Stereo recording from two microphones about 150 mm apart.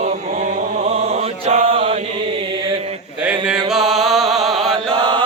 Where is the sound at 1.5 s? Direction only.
40° right (ahead or behind).